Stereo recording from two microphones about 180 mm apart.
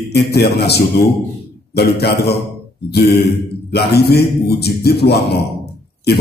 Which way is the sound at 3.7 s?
60° left (ahead or behind).